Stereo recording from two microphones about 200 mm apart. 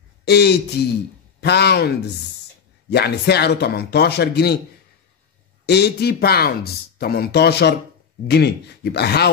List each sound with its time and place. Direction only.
0.3 s speech: 55° left (ahead or behind)
5.7 s speech: 55° left (ahead or behind)